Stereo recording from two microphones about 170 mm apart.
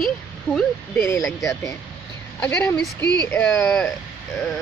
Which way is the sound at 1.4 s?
20° left (ahead or behind).